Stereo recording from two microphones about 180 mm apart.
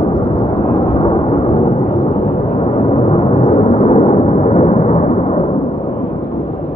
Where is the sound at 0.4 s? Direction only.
30° left (ahead or behind).